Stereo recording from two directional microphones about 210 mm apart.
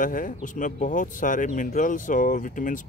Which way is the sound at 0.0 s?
40° left (ahead or behind).